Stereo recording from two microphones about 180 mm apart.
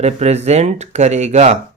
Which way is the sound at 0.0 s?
35° right (ahead or behind).